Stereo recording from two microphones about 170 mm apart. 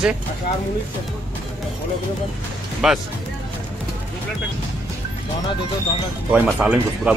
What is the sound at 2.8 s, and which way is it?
Speech, 5° right (ahead or behind).